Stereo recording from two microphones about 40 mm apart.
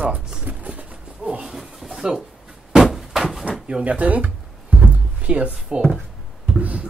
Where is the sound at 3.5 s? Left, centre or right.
Right.